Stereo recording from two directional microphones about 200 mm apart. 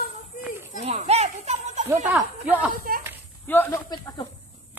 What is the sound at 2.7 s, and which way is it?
Speech, 45° right (ahead or behind).